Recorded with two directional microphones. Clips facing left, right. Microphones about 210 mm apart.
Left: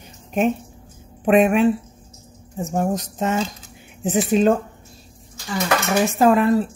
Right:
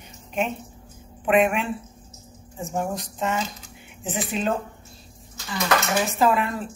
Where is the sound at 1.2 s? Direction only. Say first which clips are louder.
Left 6 dB; 40° left (ahead or behind).